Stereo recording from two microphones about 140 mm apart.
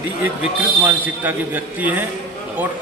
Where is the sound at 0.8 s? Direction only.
15° right (ahead or behind).